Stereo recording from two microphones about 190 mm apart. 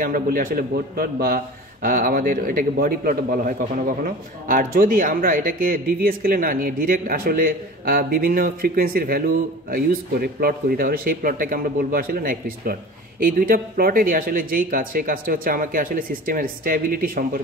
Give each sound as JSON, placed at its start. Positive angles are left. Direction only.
{"t": 0.0, "sound": "a man's voice", "side_deg": -45}